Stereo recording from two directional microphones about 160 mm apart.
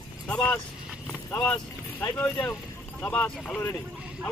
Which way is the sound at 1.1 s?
10° left (ahead or behind).